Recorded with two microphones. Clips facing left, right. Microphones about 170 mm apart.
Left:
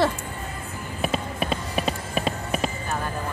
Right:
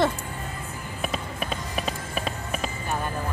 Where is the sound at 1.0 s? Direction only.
10° left (ahead or behind).